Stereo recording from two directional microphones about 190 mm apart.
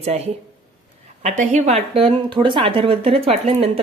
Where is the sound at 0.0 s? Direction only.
35° right (ahead or behind).